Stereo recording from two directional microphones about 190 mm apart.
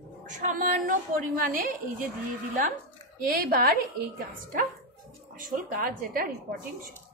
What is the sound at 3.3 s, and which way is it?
Speech, 50° right (ahead or behind).